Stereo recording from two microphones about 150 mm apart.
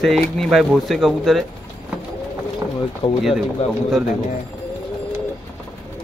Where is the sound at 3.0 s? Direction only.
35° left (ahead or behind).